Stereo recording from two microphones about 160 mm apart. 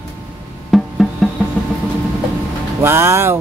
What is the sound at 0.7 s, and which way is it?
Music, centre (ahead or behind).